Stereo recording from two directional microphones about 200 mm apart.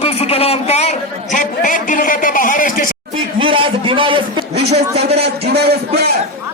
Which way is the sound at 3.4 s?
25° right (ahead or behind).